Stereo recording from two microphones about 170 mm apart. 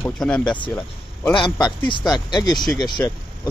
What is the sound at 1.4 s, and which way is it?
Speech, 25° left (ahead or behind).